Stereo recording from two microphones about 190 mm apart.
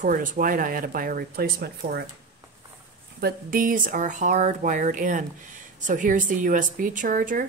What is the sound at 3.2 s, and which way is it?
A woman's voice, 45° right (ahead or behind).